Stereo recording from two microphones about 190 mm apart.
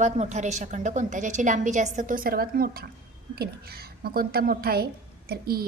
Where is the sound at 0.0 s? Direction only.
40° right (ahead or behind).